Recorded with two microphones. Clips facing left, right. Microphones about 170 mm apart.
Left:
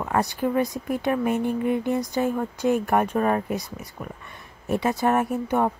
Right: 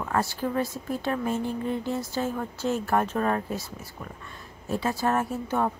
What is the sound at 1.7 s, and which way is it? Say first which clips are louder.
A woman's voice: left 5 dB; 15° left (ahead or behind).